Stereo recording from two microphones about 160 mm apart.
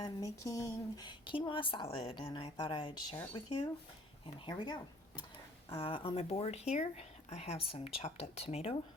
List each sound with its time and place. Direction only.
0.0 s speech: 20° left (ahead or behind); by 8.7 s 40° left (ahead or behind)